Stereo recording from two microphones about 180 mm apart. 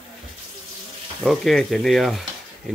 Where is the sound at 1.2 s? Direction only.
Centre (ahead or behind).